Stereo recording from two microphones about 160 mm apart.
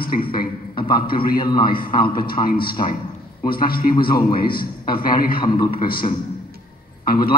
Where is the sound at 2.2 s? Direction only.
65° left (ahead or behind).